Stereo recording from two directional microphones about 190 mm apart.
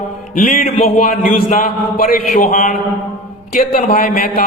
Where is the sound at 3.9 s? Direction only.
45° left (ahead or behind).